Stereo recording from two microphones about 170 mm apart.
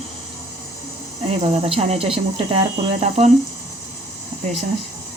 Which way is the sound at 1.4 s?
40° right (ahead or behind).